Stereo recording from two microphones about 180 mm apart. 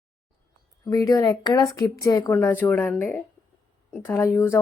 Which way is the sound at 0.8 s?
20° left (ahead or behind).